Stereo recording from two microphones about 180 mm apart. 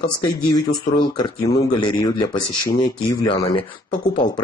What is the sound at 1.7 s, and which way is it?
Speech, 20° left (ahead or behind).